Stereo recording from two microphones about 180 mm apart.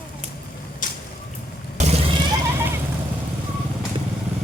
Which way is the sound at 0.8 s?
45° left (ahead or behind).